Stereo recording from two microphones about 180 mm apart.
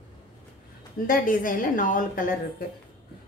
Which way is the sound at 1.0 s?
50° left (ahead or behind).